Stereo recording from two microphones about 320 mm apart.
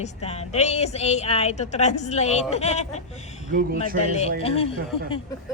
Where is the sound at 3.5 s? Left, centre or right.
Right.